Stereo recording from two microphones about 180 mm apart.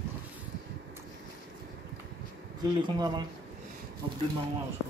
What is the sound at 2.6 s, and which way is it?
Speech, 20° right (ahead or behind).